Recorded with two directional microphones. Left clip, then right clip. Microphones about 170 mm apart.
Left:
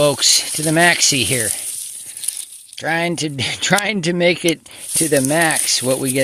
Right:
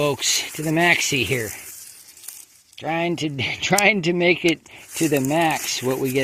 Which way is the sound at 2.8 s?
35° left (ahead or behind).